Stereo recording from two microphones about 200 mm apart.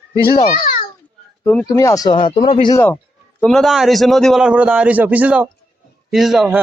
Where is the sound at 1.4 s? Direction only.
10° left (ahead or behind); by 2.8 s 25° left (ahead or behind).